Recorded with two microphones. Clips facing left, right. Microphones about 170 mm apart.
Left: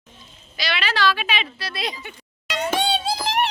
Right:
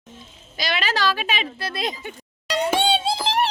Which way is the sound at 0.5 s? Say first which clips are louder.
Right 1 dB; 45° right (ahead or behind).